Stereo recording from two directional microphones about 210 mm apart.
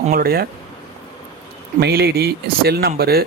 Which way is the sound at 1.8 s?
50° right (ahead or behind).